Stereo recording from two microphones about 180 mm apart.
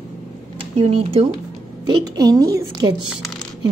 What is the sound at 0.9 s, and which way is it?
Speech, 35° right (ahead or behind).